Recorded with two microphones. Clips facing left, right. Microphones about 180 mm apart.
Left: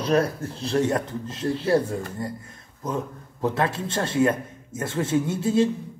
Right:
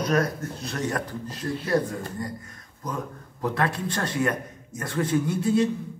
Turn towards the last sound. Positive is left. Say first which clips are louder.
# left 1 dB
turn(degrees=25)  # may be behind; listen again after turning